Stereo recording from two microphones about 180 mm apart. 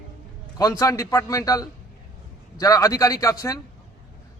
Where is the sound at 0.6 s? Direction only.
20° left (ahead or behind).